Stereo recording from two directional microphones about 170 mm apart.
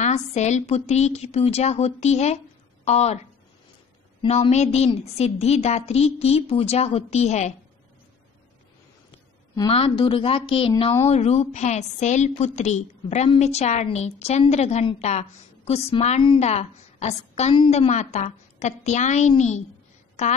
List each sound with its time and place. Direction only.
0.0 s a woman's voice: 40° left (ahead or behind)
4.3 s a woman's voice: 40° left (ahead or behind)
9.6 s a woman's voice: 35° left (ahead or behind)